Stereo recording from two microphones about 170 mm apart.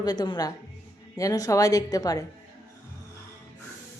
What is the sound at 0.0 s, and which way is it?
Speech, 25° left (ahead or behind).